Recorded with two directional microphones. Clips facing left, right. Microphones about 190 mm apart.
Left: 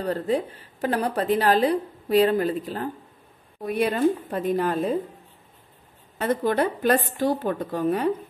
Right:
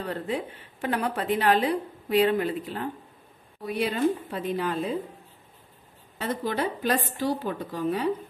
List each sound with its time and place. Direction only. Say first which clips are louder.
0.0 s a woman's voice: left 6 dB; 40° left (ahead or behind)
3.6 s a woman's voice: left 3 dB; 50° left (ahead or behind)
6.1 s a woman's voice: left 6 dB; 55° left (ahead or behind)